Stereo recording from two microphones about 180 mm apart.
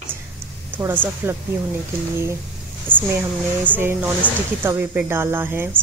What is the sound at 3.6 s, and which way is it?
A woman's voice, 10° right (ahead or behind).